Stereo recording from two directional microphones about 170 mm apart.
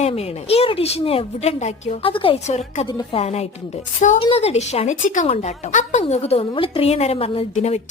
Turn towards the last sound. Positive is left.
turn(degrees=40)  # may be behind; listen again after turning